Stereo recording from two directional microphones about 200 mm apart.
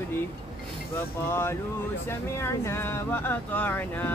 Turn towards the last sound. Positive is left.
turn(degrees=10)  # may be behind; listen again after turning